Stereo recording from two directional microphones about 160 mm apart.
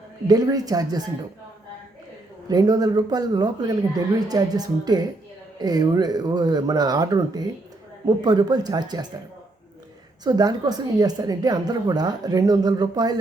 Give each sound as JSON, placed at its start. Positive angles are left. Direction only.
{"t": 0.3, "sound": "speech", "side_deg": -25}
{"t": 2.5, "sound": "speech", "side_deg": -25}
{"t": 10.2, "sound": "speech", "side_deg": -25}